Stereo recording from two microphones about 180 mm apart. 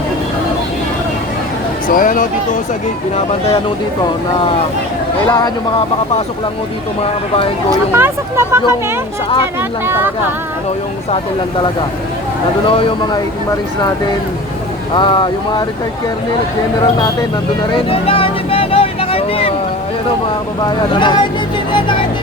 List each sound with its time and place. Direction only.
1.9 s speech: 50° left (ahead or behind)
7.9 s speech: 15° right (ahead or behind)
14.9 s speech: 25° left (ahead or behind)
16.8 s speech: 20° left (ahead or behind)
17.8 s music: 30° left (ahead or behind)
20.7 s speech: 25° left (ahead or behind)